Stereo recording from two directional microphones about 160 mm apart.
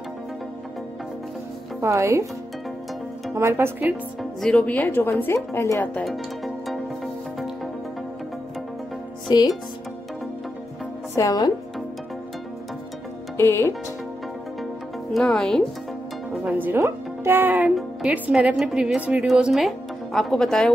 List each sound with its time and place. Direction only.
1.8 s speech: 20° right (ahead or behind)
3.3 s speech: 15° right (ahead or behind)
4.2 s a woman's voice: 5° left (ahead or behind)
6.0 s music: centre (ahead or behind)
9.3 s speech: 25° left (ahead or behind)
11.1 s speech: 25° left (ahead or behind)
13.4 s a woman's voice: 20° left (ahead or behind)
15.1 s a woman's voice: 5° left (ahead or behind)
16.4 s a woman's voice: 10° right (ahead or behind)